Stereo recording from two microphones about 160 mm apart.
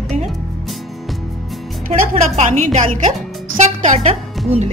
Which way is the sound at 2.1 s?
45° right (ahead or behind).